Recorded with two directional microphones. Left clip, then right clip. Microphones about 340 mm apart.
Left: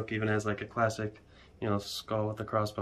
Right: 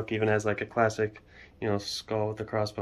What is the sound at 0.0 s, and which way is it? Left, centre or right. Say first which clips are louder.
Speech: right 5 dB; centre.